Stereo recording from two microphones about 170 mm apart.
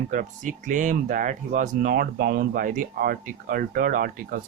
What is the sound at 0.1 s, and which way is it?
Speech, 50° right (ahead or behind).